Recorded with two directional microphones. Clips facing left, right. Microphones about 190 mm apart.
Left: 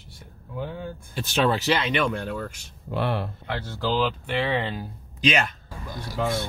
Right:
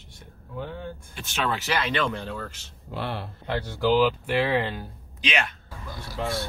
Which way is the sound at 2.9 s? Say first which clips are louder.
Left 5 dB; 55° left (ahead or behind).